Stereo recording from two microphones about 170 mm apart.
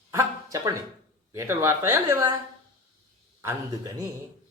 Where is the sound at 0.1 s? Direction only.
15° right (ahead or behind).